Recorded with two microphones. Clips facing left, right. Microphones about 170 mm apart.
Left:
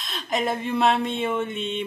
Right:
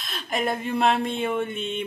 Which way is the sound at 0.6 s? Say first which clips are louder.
Even; 45° right (ahead or behind).